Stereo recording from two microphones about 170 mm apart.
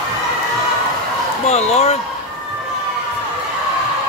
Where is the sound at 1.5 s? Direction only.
40° left (ahead or behind).